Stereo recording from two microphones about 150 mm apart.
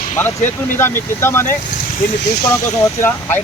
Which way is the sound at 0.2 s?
15° left (ahead or behind).